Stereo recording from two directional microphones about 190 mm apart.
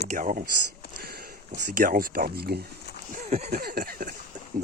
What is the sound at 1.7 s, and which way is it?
Speech, 50° right (ahead or behind).